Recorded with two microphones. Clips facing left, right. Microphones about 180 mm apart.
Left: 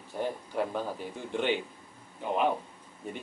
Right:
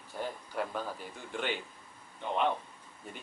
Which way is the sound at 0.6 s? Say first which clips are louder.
Left 4 dB; 15° left (ahead or behind).